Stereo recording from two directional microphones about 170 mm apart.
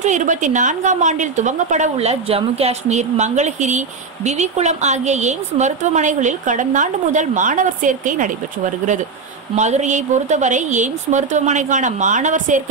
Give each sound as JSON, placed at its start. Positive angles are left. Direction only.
{"t": 0.0, "sound": "a woman's voice", "side_deg": -45}